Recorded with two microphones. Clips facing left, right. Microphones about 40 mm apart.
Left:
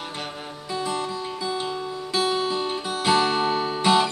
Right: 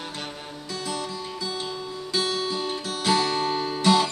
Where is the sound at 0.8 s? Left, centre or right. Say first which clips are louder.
Left 4 dB; left.